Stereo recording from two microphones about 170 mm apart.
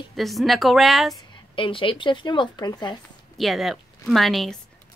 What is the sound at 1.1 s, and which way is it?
Speech, 30° left (ahead or behind).